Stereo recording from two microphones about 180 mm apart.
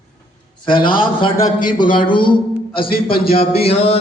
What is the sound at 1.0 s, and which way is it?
A man's voice, 30° left (ahead or behind).